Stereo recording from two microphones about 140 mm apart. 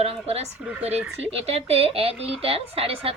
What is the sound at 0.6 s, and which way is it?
Speech, 10° right (ahead or behind).